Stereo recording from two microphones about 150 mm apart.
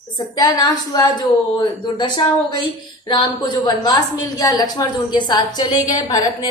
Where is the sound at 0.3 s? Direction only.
25° left (ahead or behind).